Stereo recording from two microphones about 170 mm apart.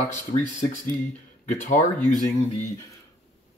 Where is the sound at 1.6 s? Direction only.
45° left (ahead or behind).